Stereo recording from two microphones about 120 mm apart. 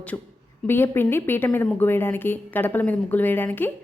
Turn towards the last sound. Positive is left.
turn(degrees=15)  # may be behind; listen again after turning